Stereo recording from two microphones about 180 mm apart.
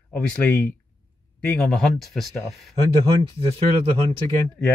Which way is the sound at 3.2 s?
30° right (ahead or behind).